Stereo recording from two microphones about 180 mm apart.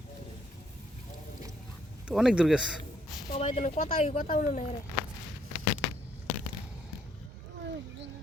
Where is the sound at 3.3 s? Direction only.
35° left (ahead or behind).